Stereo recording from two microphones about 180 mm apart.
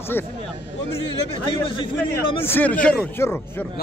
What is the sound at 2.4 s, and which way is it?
Speech, 10° left (ahead or behind).